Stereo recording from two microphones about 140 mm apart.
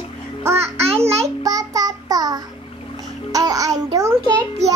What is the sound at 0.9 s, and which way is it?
Speech, 45° right (ahead or behind).